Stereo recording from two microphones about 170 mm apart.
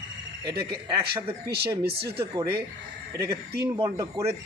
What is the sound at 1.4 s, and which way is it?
Speech, 70° right (ahead or behind).